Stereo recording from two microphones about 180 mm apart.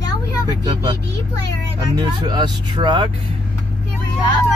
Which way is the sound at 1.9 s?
25° right (ahead or behind).